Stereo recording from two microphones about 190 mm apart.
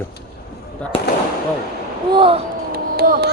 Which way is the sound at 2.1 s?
30° right (ahead or behind).